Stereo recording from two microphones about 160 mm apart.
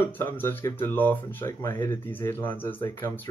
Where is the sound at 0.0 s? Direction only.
15° left (ahead or behind).